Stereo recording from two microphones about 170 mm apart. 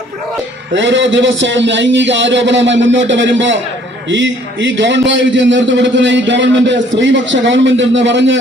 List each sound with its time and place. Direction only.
0.7 s a man's voice: 90° right